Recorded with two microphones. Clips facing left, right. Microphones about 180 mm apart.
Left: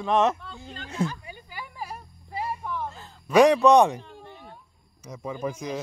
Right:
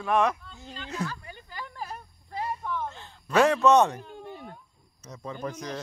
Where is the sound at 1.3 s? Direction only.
10° left (ahead or behind).